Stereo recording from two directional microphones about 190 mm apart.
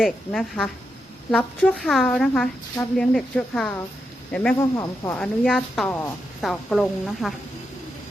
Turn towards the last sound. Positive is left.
turn(degrees=0)  # may be behind; listen again after turning